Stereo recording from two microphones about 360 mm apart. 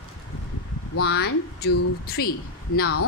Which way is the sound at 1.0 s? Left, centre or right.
Left.